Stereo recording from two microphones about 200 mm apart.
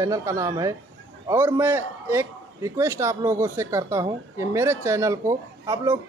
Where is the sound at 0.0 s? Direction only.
15° right (ahead or behind).